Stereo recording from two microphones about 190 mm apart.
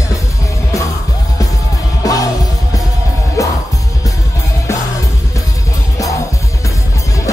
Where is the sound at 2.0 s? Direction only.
20° left (ahead or behind).